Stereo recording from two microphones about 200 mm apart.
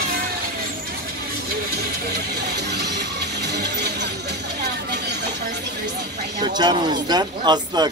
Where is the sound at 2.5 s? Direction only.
55° right (ahead or behind).